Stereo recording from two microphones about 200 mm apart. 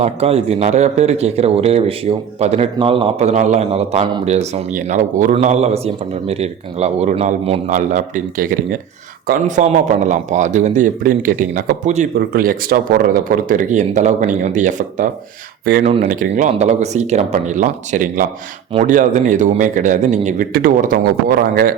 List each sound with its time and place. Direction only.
0.0 s a man's voice: 30° right (ahead or behind)
15.6 s speech: 50° right (ahead or behind)
15.9 s speech: 30° right (ahead or behind)
16.1 s a man's voice: 40° right (ahead or behind)